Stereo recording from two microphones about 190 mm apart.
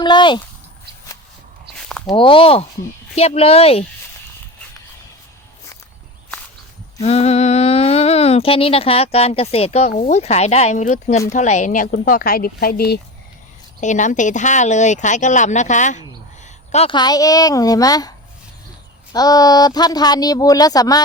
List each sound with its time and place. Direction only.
0.0 s speech: 25° left (ahead or behind)
1.8 s walk: 5° left (ahead or behind)
2.0 s speech: 25° left (ahead or behind)
7.0 s a woman's voice: 35° left (ahead or behind); by 13.0 s 55° left (ahead or behind)
13.8 s speech: 40° left (ahead or behind)
16.7 s speech: 25° left (ahead or behind)
19.1 s speech: 20° left (ahead or behind)